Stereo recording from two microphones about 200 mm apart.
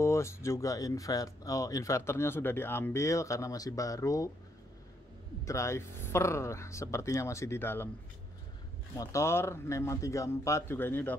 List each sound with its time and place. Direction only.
0.0 s speech: 15° left (ahead or behind)
5.4 s speech: 15° left (ahead or behind)
8.9 s speech: 15° left (ahead or behind)